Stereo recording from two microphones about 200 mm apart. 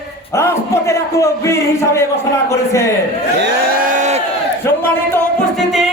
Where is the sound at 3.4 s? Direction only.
55° right (ahead or behind); by 4.2 s 35° right (ahead or behind).